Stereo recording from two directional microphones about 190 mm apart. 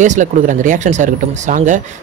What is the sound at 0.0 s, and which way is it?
Speech, 40° right (ahead or behind).